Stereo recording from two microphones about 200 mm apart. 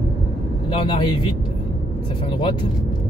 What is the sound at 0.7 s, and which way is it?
Speech, 25° left (ahead or behind).